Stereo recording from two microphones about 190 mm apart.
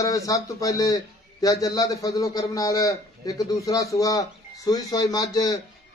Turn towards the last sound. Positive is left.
turn(degrees=20)  # may be behind; listen again after turning